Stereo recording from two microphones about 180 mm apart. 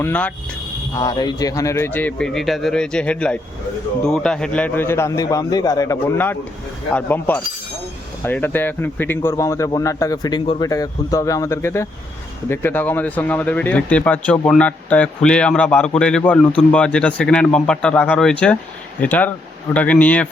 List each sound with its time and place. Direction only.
0.0 s speech: 10° left (ahead or behind)
0.9 s speech: 20° left (ahead or behind)